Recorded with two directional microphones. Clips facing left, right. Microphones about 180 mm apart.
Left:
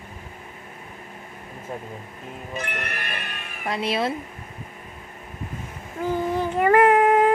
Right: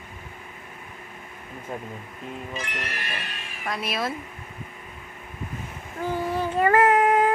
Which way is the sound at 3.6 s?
25° left (ahead or behind).